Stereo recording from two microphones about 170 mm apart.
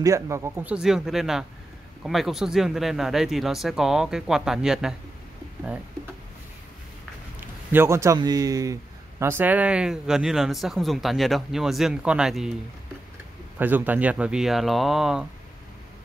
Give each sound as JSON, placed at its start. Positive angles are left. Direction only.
{"t": 0.0, "sound": "speech", "side_deg": -15}
{"t": 7.3, "sound": "speech", "side_deg": -15}
{"t": 13.6, "sound": "speech", "side_deg": -10}